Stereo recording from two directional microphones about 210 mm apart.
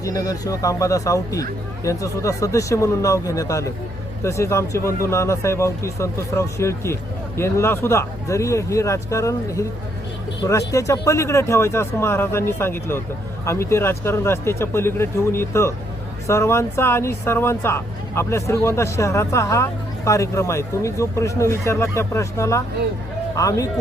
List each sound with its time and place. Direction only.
0.0 s speech: 15° left (ahead or behind)